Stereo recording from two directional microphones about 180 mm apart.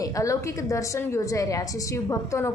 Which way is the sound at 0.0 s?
20° left (ahead or behind).